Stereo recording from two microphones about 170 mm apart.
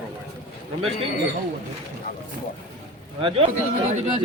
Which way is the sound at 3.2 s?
30° right (ahead or behind).